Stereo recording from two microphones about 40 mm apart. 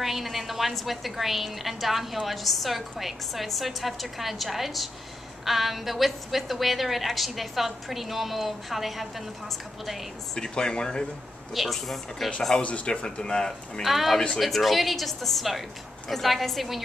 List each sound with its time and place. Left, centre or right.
0.0 s a woman's voice: centre
10.3 s a man's voice: centre
11.5 s a woman's voice: centre
12.5 s a man's voice: left
13.8 s a woman's voice: centre